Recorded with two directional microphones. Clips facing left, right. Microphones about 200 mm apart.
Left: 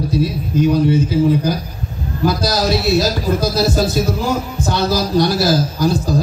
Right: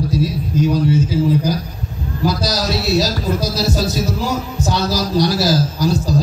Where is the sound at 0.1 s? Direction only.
60° left (ahead or behind).